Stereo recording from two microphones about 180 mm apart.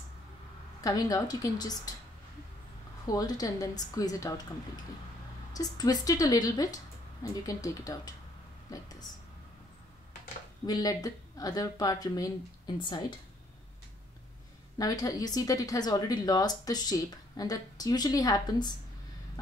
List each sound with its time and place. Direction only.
0.8 s speech: 20° left (ahead or behind)
3.1 s speech: 20° left (ahead or behind)
5.5 s speech: 20° left (ahead or behind)
10.7 s speech: 20° left (ahead or behind)
14.8 s speech: 20° left (ahead or behind)